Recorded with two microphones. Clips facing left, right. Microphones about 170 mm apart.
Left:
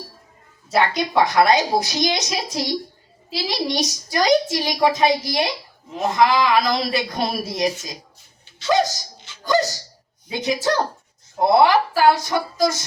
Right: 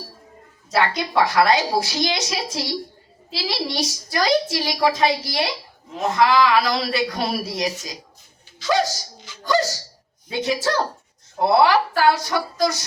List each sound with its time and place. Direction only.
0.7 s a woman's voice: 20° left (ahead or behind)
8.5 s a sound: 25° left (ahead or behind)
10.2 s a woman's voice: 20° left (ahead or behind)